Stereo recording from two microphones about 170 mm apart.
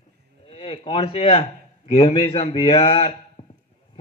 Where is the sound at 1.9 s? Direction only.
35° left (ahead or behind).